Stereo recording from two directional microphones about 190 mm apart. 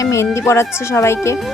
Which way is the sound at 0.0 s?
15° left (ahead or behind).